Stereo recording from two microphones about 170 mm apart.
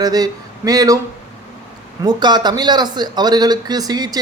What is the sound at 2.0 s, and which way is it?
Speech, 25° right (ahead or behind).